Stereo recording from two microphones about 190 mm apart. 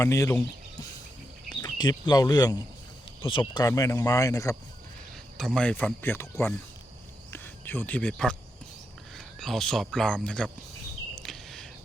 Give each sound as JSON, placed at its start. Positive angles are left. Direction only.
{"t": 0.0, "sound": "speech", "side_deg": 15}
{"t": 5.4, "sound": "speech", "side_deg": 5}
{"t": 11.2, "sound": "a sound", "side_deg": 0}